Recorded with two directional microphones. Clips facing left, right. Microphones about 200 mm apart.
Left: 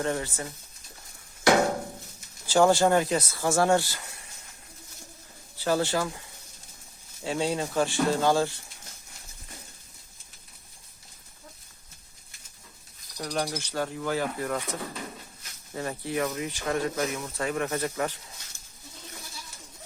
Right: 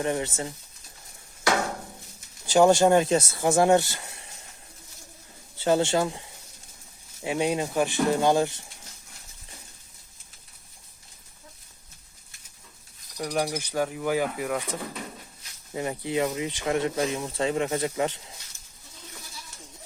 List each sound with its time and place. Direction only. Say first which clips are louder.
0.0 s speech: right 2 dB; 20° right (ahead or behind)
2.5 s speech: right 3 dB; 20° right (ahead or behind)
5.5 s speech: right 3 dB; 20° right (ahead or behind)
7.3 s bird: right 2 dB; 15° right (ahead or behind)
13.1 s bird: right 3 dB; 5° right (ahead or behind)
15.7 s speech: right 3 dB; 15° right (ahead or behind)